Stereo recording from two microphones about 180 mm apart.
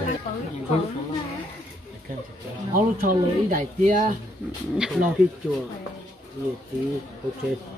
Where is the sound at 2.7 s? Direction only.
50° right (ahead or behind).